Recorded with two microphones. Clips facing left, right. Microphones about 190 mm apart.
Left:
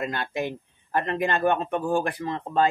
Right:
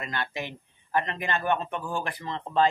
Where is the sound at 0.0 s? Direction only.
50° left (ahead or behind).